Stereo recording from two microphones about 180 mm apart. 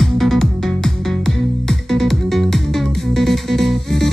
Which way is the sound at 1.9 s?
Centre (ahead or behind).